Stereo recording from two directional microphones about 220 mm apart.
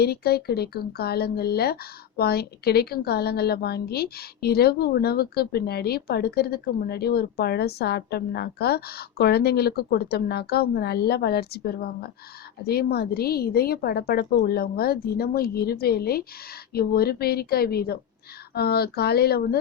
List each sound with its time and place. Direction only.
0.0 s speech: 45° left (ahead or behind)